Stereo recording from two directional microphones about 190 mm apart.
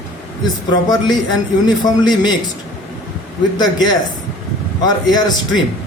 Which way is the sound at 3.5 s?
20° left (ahead or behind).